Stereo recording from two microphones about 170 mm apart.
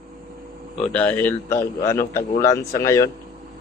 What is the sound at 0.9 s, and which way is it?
A man's voice, 10° left (ahead or behind).